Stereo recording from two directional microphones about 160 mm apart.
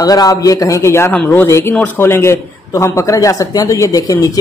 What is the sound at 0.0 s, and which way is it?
A man's voice, 25° left (ahead or behind).